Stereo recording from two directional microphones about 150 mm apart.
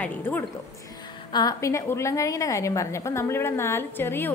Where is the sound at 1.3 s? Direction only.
25° left (ahead or behind).